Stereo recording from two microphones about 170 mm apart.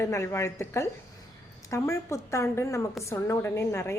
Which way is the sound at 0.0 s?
15° left (ahead or behind).